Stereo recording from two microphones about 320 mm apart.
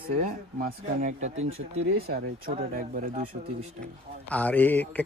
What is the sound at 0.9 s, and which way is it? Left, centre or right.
Speech, right.